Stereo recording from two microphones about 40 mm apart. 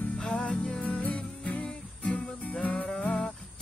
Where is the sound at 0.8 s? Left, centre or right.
Left.